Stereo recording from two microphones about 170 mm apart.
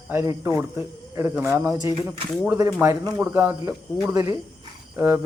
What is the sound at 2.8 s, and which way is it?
Speech, 15° right (ahead or behind).